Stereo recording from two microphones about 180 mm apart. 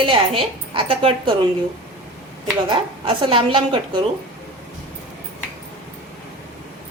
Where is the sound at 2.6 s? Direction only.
30° right (ahead or behind).